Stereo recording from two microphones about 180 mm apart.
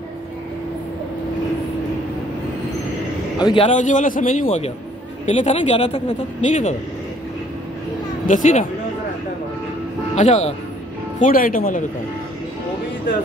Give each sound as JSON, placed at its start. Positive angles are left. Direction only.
{"t": 3.3, "sound": "a man's voice", "side_deg": 25}
{"t": 3.6, "sound": "a man's voice", "side_deg": 45}
{"t": 4.5, "sound": "speech", "side_deg": 35}
{"t": 8.3, "sound": "a man's voice", "side_deg": 45}
{"t": 10.1, "sound": "a man's voice", "side_deg": 40}